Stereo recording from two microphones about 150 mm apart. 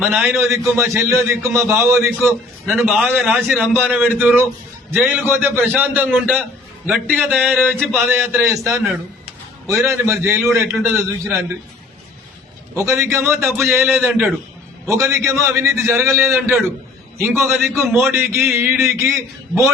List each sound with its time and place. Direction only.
0.0 s a man's voice: 15° right (ahead or behind)
12.7 s a man's voice: 20° right (ahead or behind)